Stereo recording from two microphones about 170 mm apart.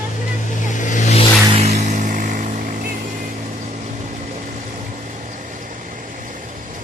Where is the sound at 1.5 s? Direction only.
40° right (ahead or behind).